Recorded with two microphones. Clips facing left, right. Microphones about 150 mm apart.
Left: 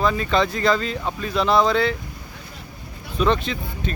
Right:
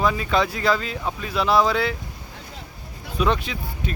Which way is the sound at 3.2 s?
10° right (ahead or behind).